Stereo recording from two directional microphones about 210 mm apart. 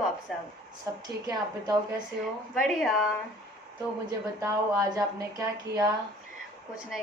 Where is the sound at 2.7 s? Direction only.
Centre (ahead or behind).